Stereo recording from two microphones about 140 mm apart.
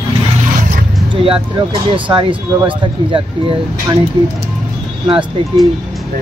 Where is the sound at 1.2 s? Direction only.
40° right (ahead or behind).